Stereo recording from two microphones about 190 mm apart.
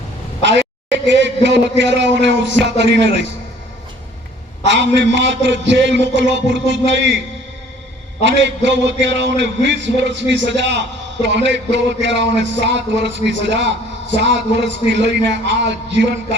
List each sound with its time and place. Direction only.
1.0 s a man's voice: 70° right (ahead or behind)
4.7 s a man's voice: 70° right (ahead or behind)
8.2 s a man's voice: 70° right (ahead or behind)